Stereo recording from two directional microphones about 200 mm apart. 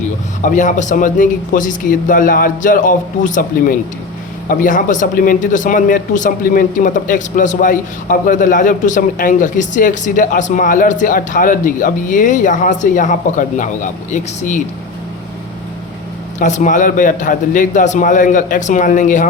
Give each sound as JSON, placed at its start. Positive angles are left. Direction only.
{"t": 0.4, "sound": "speech", "side_deg": 40}
{"t": 16.4, "sound": "speech", "side_deg": 40}